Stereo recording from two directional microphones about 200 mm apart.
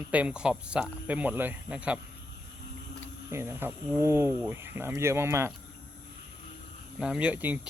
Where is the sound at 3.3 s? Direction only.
10° right (ahead or behind).